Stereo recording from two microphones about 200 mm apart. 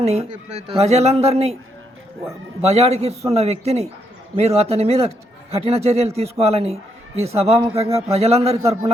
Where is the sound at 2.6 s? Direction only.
30° right (ahead or behind).